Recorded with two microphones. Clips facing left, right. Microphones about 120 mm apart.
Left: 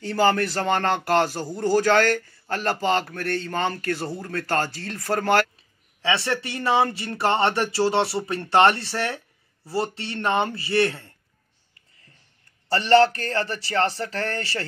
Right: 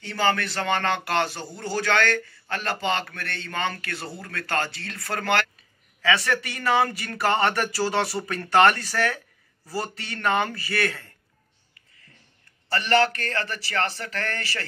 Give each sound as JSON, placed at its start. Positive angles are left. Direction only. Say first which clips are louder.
{"t": 0.0, "sound": "a man's voice", "louder": "left 4 dB", "side_deg": 40}
{"t": 12.6, "sound": "a man's voice", "louder": "left 5 dB", "side_deg": 30}